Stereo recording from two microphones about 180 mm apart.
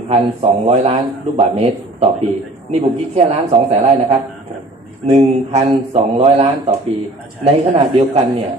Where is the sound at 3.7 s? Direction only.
35° right (ahead or behind).